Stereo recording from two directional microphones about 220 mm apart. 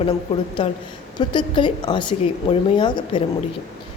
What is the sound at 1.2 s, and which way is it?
Speech, 20° left (ahead or behind).